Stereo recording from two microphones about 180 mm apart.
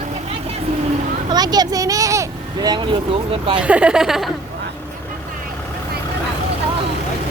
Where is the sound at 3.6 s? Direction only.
5° right (ahead or behind).